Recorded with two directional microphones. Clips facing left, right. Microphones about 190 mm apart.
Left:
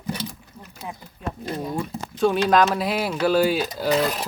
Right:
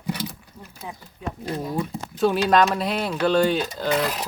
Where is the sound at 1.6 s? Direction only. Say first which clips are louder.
Even; centre (ahead or behind).